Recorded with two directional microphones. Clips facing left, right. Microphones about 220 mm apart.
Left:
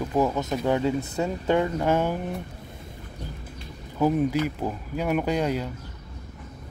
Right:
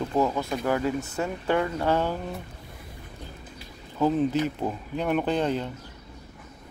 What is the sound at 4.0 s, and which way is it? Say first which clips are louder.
Speech: left 1 dB; 10° left (ahead or behind).